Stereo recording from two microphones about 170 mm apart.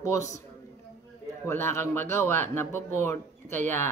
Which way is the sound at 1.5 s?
15° left (ahead or behind).